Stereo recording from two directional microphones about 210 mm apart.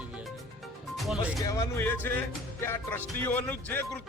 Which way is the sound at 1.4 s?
15° left (ahead or behind).